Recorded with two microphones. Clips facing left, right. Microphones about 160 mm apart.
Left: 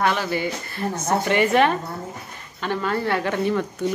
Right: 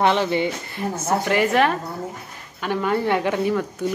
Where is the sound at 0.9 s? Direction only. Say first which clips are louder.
Even; 5° right (ahead or behind).